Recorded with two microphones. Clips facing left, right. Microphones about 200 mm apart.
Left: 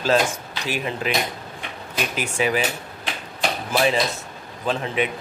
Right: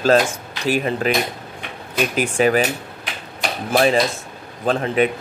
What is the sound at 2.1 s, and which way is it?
Speech, 45° right (ahead or behind).